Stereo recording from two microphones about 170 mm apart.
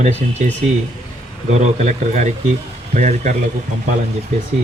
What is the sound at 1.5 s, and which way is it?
Speech, 40° right (ahead or behind).